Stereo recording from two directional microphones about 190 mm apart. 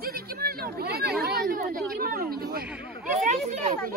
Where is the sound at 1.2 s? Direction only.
50° right (ahead or behind).